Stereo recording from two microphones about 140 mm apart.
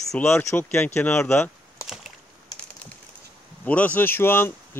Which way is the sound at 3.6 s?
10° left (ahead or behind).